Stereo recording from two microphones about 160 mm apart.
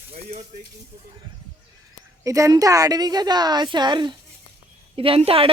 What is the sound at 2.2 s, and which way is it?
A woman's voice, 20° right (ahead or behind).